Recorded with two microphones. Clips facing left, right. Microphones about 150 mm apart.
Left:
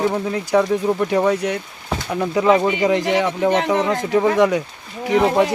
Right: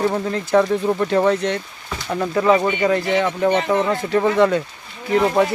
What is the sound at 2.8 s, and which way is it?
Speech, 15° left (ahead or behind).